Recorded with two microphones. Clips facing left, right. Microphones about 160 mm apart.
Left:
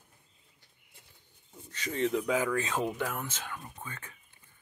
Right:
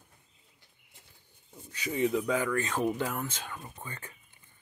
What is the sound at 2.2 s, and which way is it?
Speech, 5° left (ahead or behind).